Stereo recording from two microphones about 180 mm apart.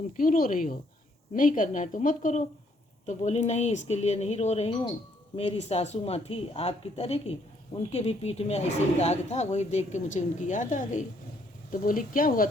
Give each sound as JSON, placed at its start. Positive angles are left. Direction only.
{"t": 0.2, "sound": "a woman's voice", "side_deg": 55}